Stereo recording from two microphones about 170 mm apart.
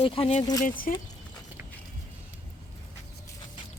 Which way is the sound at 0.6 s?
55° left (ahead or behind).